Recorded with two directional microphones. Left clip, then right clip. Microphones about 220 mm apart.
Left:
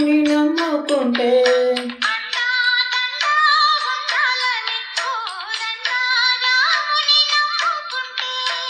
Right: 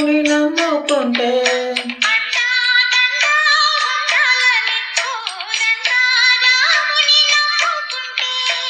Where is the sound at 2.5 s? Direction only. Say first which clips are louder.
Right 4 dB; 55° right (ahead or behind).